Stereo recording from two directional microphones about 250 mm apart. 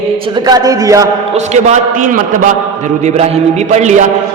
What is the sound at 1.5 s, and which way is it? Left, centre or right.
Speech, right.